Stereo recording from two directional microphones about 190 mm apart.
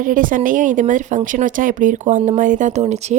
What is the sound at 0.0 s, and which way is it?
A woman's voice, 45° right (ahead or behind).